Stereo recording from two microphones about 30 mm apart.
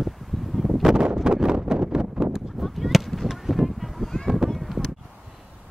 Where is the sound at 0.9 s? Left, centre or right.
Right.